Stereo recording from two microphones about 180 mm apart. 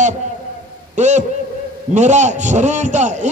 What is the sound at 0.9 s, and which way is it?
A man's voice, 40° right (ahead or behind).